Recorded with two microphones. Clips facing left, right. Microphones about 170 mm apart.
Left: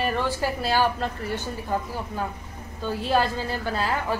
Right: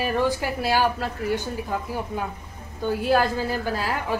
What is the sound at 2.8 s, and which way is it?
Speech, 10° right (ahead or behind).